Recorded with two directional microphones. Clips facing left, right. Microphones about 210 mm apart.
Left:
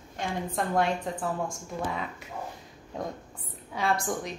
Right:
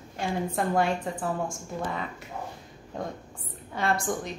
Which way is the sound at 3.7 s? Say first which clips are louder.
Right 1 dB; centre (ahead or behind).